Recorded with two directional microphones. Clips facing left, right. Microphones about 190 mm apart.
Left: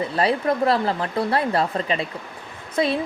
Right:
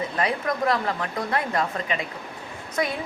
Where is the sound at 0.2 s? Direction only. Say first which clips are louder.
Left 5 dB; 30° left (ahead or behind).